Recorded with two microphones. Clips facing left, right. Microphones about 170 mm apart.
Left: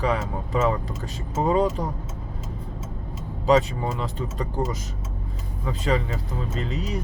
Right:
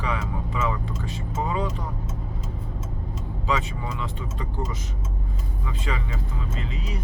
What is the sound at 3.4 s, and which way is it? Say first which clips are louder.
Speech: left 8 dB; 40° left (ahead or behind).